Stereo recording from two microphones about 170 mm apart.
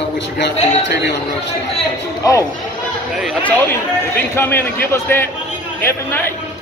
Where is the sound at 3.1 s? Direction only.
Centre (ahead or behind).